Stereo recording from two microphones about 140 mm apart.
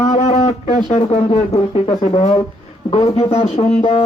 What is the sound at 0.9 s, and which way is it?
Speech, 50° left (ahead or behind).